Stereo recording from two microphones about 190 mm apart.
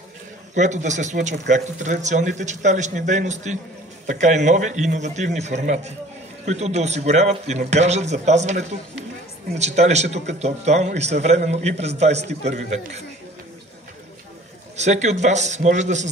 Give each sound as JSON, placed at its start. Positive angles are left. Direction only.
{"t": 0.6, "sound": "a man's voice", "side_deg": -40}
{"t": 14.8, "sound": "a man's voice", "side_deg": -35}